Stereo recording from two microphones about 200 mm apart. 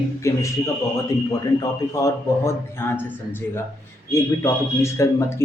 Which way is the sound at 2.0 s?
15° left (ahead or behind).